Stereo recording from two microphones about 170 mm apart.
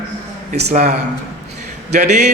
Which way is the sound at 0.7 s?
45° right (ahead or behind).